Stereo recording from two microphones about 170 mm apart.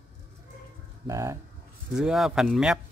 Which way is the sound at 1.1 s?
20° right (ahead or behind).